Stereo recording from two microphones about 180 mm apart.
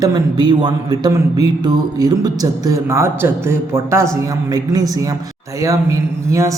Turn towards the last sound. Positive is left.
turn(degrees=-15)  # may be behind; listen again after turning